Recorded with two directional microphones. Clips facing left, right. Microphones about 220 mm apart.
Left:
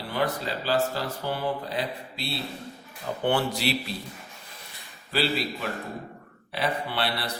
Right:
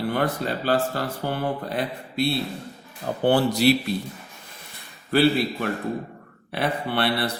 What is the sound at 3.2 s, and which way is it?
Speech, 40° right (ahead or behind).